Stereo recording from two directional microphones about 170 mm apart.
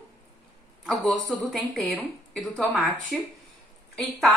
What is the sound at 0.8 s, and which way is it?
A woman's voice, centre (ahead or behind).